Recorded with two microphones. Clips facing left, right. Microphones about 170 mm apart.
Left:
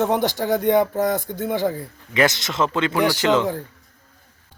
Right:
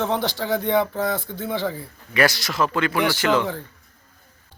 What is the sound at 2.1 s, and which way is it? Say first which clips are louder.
Speech: left 1 dB; 20° left (ahead or behind).